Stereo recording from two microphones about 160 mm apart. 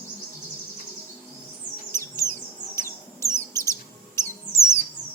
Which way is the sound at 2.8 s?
15° left (ahead or behind).